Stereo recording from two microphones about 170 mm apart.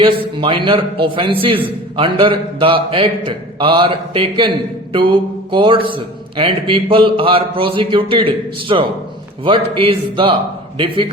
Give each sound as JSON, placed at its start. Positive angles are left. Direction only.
{"t": 0.0, "sound": "a man's voice", "side_deg": -30}